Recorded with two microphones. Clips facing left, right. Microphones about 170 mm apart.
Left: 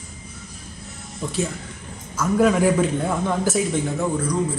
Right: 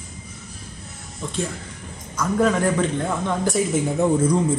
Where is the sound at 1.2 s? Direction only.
10° left (ahead or behind).